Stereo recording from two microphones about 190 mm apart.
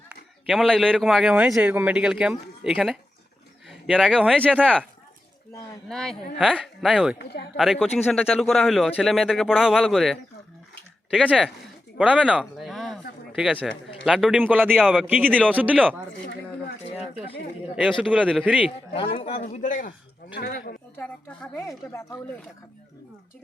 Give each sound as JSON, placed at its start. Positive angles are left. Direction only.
{"t": 0.4, "sound": "a man's voice", "side_deg": 5}
{"t": 3.7, "sound": "a sound", "side_deg": 0}
{"t": 4.3, "sound": "a man's voice", "side_deg": 5}
{"t": 5.9, "sound": "a man's voice", "side_deg": 5}
{"t": 7.9, "sound": "a man's voice", "side_deg": 10}
{"t": 11.9, "sound": "a sound", "side_deg": -5}
{"t": 13.6, "sound": "a man's voice", "side_deg": 0}
{"t": 16.2, "sound": "a sound", "side_deg": 60}
{"t": 18.1, "sound": "a man's voice", "side_deg": -10}
{"t": 18.9, "sound": "a man's voice", "side_deg": 30}
{"t": 20.9, "sound": "a woman's voice", "side_deg": 10}